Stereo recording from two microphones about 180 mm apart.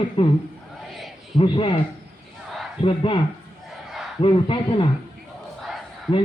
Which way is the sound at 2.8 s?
30° left (ahead or behind).